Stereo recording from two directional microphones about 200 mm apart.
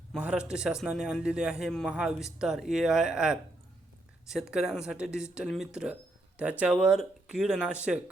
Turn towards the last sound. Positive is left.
turn(degrees=-5)  # may be behind; listen again after turning